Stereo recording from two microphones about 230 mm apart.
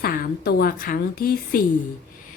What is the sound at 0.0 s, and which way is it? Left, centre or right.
Speech, left.